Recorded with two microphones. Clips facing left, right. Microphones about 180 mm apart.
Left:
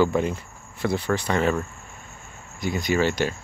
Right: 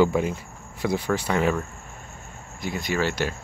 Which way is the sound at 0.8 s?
10° right (ahead or behind).